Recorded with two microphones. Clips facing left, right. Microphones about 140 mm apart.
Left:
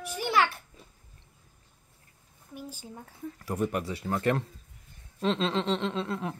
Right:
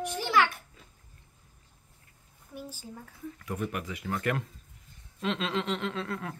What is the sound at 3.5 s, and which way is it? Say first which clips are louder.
Speech: left 5 dB; 35° left (ahead or behind).